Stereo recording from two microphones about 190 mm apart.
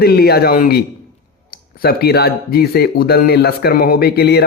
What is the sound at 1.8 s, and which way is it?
A man's voice, 55° left (ahead or behind).